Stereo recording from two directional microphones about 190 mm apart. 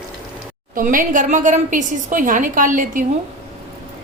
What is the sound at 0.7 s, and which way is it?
A woman's voice, 45° right (ahead or behind).